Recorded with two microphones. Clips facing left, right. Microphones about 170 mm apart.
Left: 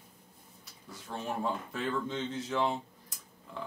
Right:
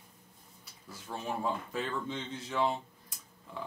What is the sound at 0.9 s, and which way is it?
Speech, centre (ahead or behind).